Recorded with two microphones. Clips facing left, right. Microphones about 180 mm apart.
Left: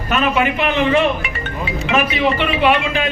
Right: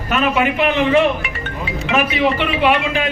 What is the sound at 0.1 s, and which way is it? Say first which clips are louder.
A man's voice: even; 10° right (ahead or behind).